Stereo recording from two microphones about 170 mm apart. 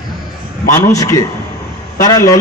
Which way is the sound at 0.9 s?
20° left (ahead or behind).